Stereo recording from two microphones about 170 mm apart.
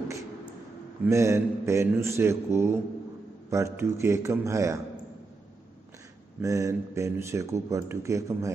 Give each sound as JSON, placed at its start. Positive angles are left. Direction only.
{"t": 1.0, "sound": "speech", "side_deg": -15}
{"t": 6.4, "sound": "speech", "side_deg": -20}